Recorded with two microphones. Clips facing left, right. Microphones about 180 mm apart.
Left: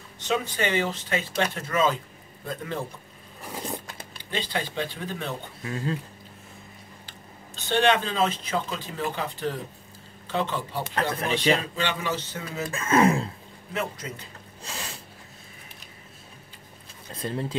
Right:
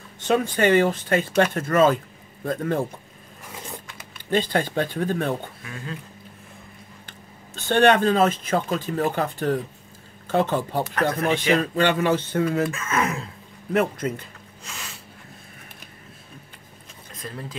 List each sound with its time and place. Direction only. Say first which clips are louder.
0.2 s speech: right 6 dB; 50° right (ahead or behind)
3.5 s a sound: left 4 dB; 35° left (ahead or behind)
4.3 s speech: right 8 dB; 50° right (ahead or behind)
5.6 s speech: left 6 dB; 30° left (ahead or behind)
7.1 s speech: right 1 dB; 50° right (ahead or behind)
12.7 s speech: left 5 dB; 30° left (ahead or behind)
13.7 s speech: right 9 dB; 55° right (ahead or behind)
14.6 s a sound: left 3 dB; 35° left (ahead or behind)
17.1 s speech: left 6 dB; 30° left (ahead or behind)